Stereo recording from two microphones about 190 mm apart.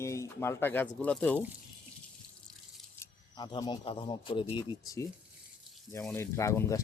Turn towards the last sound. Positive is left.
turn(degrees=15)  # may be behind; listen again after turning